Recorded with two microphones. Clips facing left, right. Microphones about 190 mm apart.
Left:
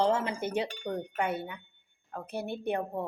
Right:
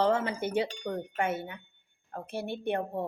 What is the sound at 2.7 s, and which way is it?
Speech, 55° right (ahead or behind).